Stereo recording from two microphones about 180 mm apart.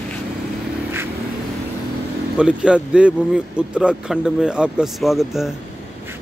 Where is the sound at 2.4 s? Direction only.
5° right (ahead or behind).